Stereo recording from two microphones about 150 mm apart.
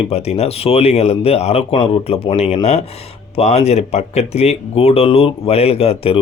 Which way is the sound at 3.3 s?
45° left (ahead or behind).